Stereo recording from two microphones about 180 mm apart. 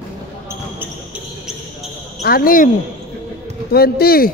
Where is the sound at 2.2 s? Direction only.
55° left (ahead or behind).